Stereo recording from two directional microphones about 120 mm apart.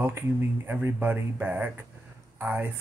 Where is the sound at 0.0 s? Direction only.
20° right (ahead or behind).